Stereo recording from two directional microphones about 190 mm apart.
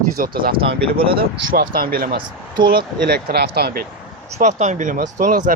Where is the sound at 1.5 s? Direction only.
50° right (ahead or behind).